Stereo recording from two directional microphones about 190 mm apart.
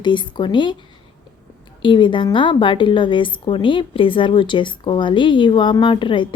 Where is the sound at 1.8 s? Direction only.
25° left (ahead or behind).